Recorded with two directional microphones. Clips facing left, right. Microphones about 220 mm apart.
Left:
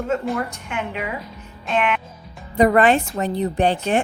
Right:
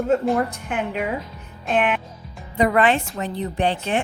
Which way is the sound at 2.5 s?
40° left (ahead or behind).